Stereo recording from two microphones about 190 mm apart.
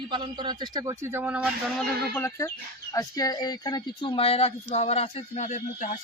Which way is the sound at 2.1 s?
15° left (ahead or behind).